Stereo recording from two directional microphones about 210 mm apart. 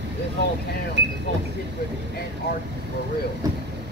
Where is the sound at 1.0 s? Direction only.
55° right (ahead or behind).